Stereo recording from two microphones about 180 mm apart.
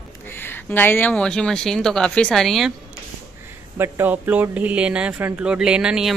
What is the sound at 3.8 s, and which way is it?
Speech, 10° right (ahead or behind).